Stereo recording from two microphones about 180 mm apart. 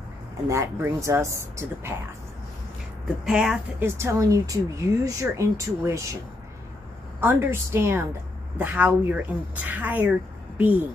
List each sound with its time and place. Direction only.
0.5 s speech: 15° right (ahead or behind)
3.3 s speech: 5° right (ahead or behind)
3.8 s speech: 15° right (ahead or behind)
7.2 s speech: 10° right (ahead or behind)